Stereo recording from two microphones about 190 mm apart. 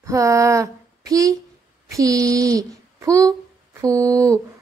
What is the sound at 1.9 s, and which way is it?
Speech, 20° right (ahead or behind).